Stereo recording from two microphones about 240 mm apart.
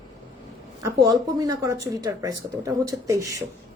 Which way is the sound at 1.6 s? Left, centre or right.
Centre.